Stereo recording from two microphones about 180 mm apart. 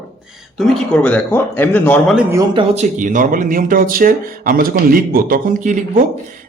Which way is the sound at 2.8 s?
45° right (ahead or behind).